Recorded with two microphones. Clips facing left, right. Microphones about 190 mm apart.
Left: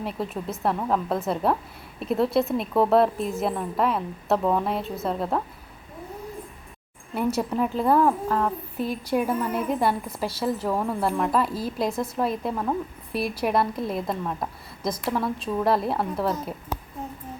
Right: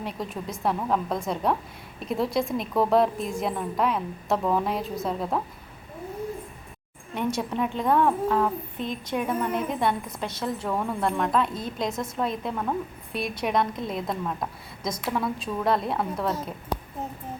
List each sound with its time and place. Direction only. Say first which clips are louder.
0.0 s a woman's voice: left 3 dB; centre (ahead or behind)
7.3 s a woman's voice: left 3 dB; 5° left (ahead or behind)